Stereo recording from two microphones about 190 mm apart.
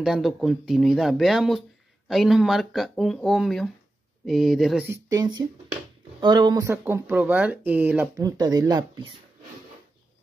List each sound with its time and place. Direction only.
0.0 s speech: centre (ahead or behind)
8.2 s speech: 20° right (ahead or behind)